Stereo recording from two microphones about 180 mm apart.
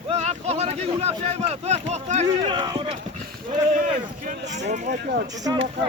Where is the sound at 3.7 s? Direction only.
45° right (ahead or behind).